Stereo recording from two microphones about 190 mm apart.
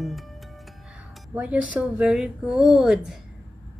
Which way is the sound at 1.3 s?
5° right (ahead or behind).